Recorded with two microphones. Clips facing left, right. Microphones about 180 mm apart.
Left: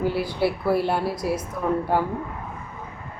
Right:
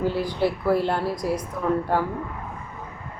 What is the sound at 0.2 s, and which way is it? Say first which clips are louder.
A woman's voice: even; 10° left (ahead or behind).